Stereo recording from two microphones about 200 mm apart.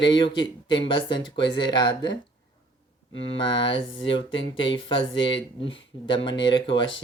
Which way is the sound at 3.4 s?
25° left (ahead or behind).